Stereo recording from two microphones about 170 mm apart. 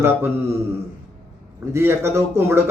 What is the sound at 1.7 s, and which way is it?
Speech, 15° right (ahead or behind).